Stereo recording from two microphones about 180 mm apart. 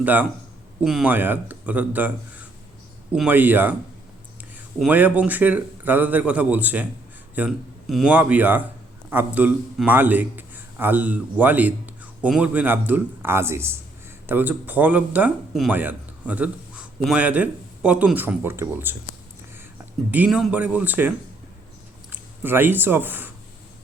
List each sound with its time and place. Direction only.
0.0 s a man's voice: 10° right (ahead or behind)
22.1 s speech: 10° right (ahead or behind)